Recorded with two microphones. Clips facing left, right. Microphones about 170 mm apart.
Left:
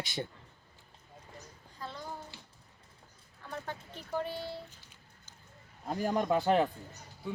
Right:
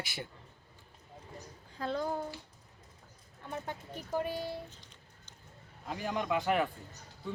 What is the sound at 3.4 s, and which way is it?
Speech, 20° right (ahead or behind).